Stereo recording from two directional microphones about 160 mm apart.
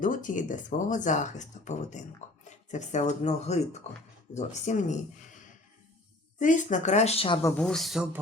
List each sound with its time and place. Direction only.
0.0 s speech: 55° left (ahead or behind)
6.4 s speech: 50° left (ahead or behind)
7.4 s speech: 5° left (ahead or behind)